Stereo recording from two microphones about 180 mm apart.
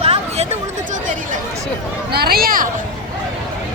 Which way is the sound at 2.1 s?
60° right (ahead or behind).